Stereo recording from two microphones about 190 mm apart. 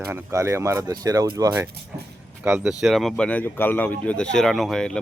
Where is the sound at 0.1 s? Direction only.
15° right (ahead or behind).